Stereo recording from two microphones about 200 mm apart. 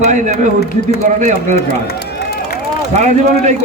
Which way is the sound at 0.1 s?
35° right (ahead or behind).